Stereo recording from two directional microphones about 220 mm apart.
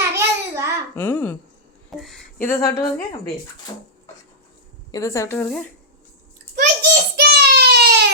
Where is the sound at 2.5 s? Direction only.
15° left (ahead or behind).